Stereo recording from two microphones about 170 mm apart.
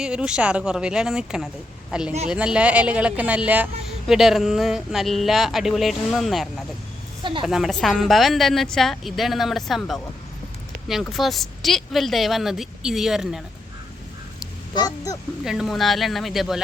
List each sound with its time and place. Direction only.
0.0 s a woman's voice: 5° right (ahead or behind)
11.0 s speech: centre (ahead or behind)
14.8 s speech: 20° left (ahead or behind)
15.4 s speech: centre (ahead or behind)